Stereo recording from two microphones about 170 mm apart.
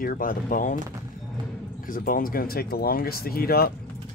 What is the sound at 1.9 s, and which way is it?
Speech, 55° left (ahead or behind).